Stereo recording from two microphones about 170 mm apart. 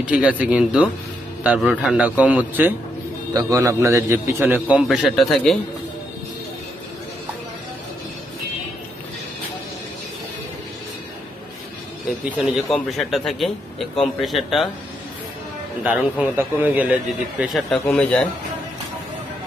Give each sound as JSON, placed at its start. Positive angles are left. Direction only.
{"t": 0.0, "sound": "a man's voice", "side_deg": -5}
{"t": 12.3, "sound": "a man's voice", "side_deg": -5}
{"t": 15.8, "sound": "a man's voice", "side_deg": -10}